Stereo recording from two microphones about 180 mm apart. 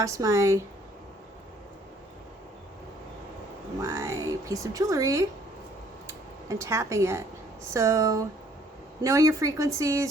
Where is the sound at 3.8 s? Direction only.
15° right (ahead or behind).